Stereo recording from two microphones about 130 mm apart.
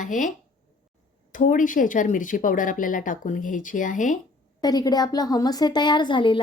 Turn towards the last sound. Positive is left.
turn(degrees=40)  # may be behind; listen again after turning